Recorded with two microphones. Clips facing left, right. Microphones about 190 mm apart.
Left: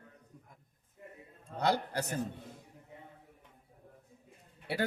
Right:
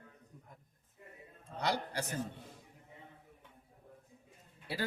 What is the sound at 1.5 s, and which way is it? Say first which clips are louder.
Speech: left 4 dB; 55° left (ahead or behind).